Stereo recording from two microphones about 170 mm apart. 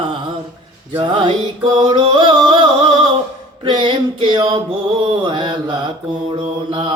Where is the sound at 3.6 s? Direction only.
25° right (ahead or behind).